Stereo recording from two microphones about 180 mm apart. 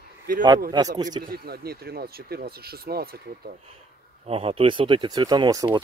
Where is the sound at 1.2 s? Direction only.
55° right (ahead or behind).